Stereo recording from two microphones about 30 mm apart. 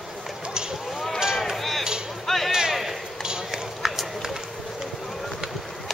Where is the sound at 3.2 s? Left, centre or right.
Right.